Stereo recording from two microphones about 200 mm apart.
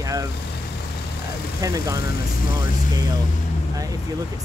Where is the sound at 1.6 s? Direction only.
15° right (ahead or behind).